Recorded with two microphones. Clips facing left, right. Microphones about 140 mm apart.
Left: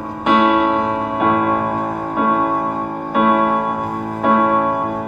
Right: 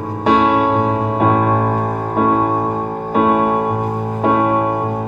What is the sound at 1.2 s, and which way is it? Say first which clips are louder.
Music: right 1 dB; 30° right (ahead or behind).